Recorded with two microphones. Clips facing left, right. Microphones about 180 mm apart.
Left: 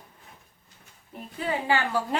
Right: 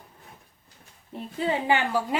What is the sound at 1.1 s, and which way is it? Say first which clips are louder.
Speech: right 3 dB; 25° right (ahead or behind).